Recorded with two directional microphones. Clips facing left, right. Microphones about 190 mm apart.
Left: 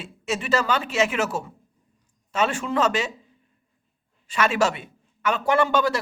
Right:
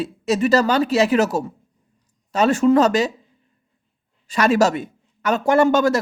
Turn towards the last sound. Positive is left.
turn(degrees=-45)  # may be behind; listen again after turning